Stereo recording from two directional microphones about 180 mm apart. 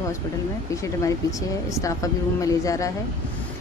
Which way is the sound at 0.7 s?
20° left (ahead or behind).